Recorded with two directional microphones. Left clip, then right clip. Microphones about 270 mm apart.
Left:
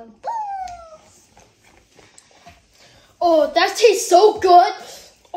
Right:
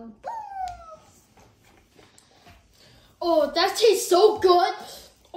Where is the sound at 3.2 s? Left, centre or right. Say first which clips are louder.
Left 6 dB; centre.